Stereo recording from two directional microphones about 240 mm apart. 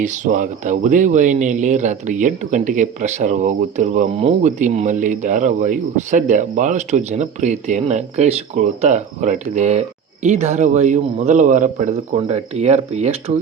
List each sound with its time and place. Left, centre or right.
0.0 s a man's voice: right